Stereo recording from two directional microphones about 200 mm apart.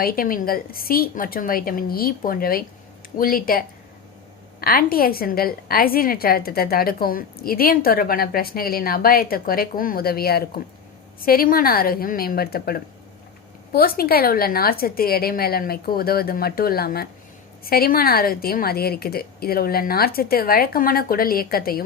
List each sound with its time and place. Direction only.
0.0 s a woman's voice: 45° left (ahead or behind)
4.6 s a woman's voice: 45° left (ahead or behind)